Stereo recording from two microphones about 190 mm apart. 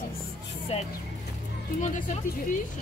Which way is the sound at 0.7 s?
30° left (ahead or behind).